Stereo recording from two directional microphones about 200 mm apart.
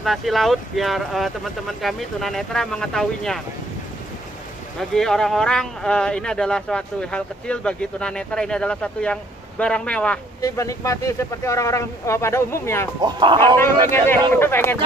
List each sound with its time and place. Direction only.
0.0 s speech: centre (ahead or behind)
4.7 s speech: centre (ahead or behind)
13.0 s speech: 25° right (ahead or behind)
13.6 s speech: 10° left (ahead or behind)